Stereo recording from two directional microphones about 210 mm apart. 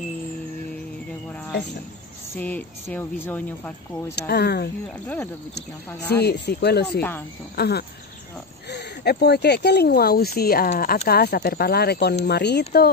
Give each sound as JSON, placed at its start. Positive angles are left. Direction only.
{"t": 2.3, "sound": "speech", "side_deg": 10}
{"t": 4.1, "sound": "speech", "side_deg": 50}
{"t": 4.8, "sound": "speech", "side_deg": 10}
{"t": 6.2, "sound": "speech", "side_deg": 50}
{"t": 7.0, "sound": "speech", "side_deg": 10}
{"t": 7.5, "sound": "speech", "side_deg": 50}